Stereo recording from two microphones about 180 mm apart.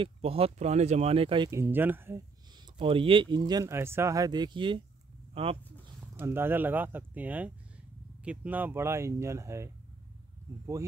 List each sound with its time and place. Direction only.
0.0 s speech: 35° right (ahead or behind)
1.5 s speech: 10° right (ahead or behind)
2.5 s speech: 25° right (ahead or behind)
6.1 s speech: 10° right (ahead or behind)